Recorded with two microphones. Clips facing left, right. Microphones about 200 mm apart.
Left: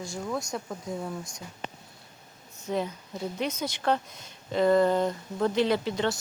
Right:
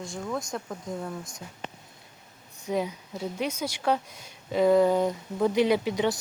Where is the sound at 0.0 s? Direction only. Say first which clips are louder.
Even; centre (ahead or behind).